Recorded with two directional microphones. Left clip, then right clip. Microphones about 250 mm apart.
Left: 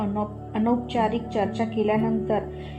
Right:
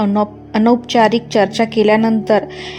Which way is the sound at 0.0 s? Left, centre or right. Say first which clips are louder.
Right 12 dB; right.